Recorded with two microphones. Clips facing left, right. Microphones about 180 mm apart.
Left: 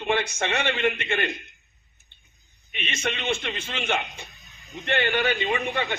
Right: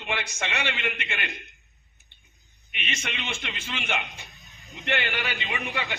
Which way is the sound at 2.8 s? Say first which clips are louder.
Left 5 dB; 50° left (ahead or behind).